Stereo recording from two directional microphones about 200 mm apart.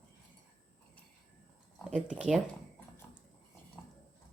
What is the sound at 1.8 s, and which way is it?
Speech, 5° right (ahead or behind).